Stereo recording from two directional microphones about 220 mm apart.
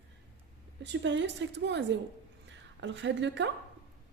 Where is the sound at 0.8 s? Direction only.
55° right (ahead or behind).